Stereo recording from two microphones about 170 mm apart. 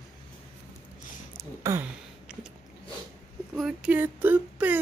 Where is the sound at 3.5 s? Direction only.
5° right (ahead or behind).